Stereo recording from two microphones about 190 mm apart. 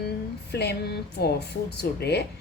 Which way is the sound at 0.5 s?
60° left (ahead or behind).